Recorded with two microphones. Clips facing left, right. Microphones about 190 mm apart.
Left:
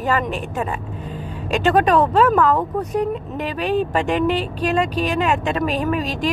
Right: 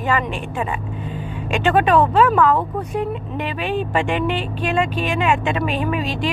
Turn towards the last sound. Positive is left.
turn(degrees=40)  # may be behind; listen again after turning